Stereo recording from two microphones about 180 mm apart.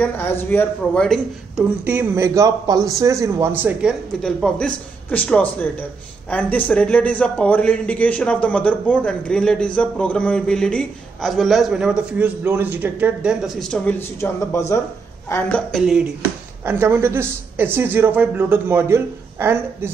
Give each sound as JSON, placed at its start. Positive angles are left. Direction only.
{"t": 0.0, "sound": "a man's voice", "side_deg": 10}
{"t": 1.6, "sound": "a man's voice", "side_deg": -10}
{"t": 3.8, "sound": "a man's voice", "side_deg": 0}
{"t": 16.8, "sound": "a man's voice", "side_deg": -15}